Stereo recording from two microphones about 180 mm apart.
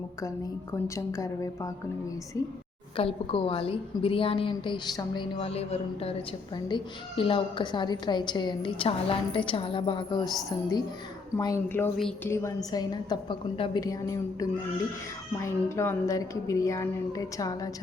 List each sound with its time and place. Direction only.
0.7 s a woman's voice: 15° left (ahead or behind)
2.9 s a woman's voice: 30° left (ahead or behind)
11.3 s a woman's voice: 20° left (ahead or behind)
11.7 s a woman's voice: 5° left (ahead or behind)